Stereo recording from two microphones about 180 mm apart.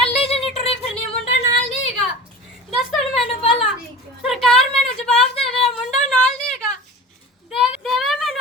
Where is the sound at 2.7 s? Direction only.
Centre (ahead or behind).